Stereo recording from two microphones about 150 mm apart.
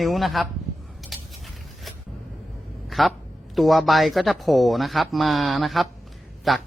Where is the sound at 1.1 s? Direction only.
Centre (ahead or behind).